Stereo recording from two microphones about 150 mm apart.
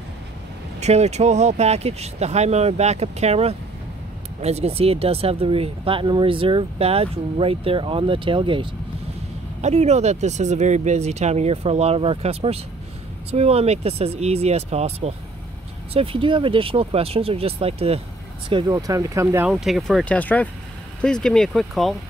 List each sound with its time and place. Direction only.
0.7 s speech: 45° right (ahead or behind)
9.6 s speech: 50° right (ahead or behind)
18.5 s speech: 30° right (ahead or behind)
19.5 s speech: centre (ahead or behind)
20.2 s speech: 10° left (ahead or behind)